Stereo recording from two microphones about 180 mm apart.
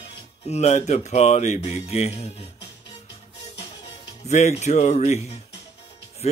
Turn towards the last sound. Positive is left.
turn(degrees=35)  # may be behind; listen again after turning